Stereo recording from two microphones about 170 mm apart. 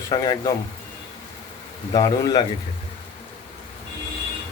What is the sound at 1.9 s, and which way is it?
Speech, 25° left (ahead or behind).